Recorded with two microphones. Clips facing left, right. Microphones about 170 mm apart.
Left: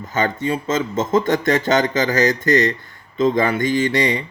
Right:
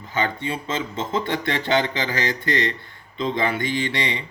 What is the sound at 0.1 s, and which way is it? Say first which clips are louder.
Speech: left 5 dB; 45° left (ahead or behind).